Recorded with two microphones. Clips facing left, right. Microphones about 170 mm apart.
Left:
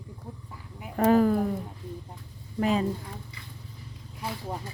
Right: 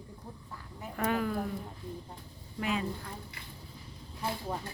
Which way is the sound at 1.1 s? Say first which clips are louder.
Left 12 dB; 40° left (ahead or behind).